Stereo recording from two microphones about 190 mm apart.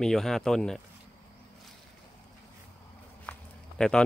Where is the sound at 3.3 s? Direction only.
10° left (ahead or behind).